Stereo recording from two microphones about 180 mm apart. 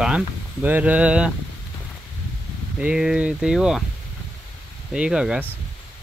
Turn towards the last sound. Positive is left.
turn(degrees=-5)  # may be behind; listen again after turning